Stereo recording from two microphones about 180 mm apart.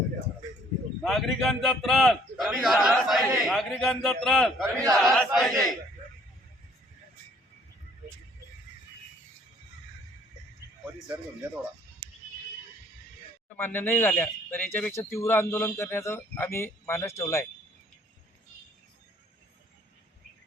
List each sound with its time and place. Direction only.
1.0 s a man's voice: centre (ahead or behind)
4.6 s a man's voice: 20° right (ahead or behind)
4.9 s a man's voice: centre (ahead or behind)
13.5 s speech: 10° left (ahead or behind)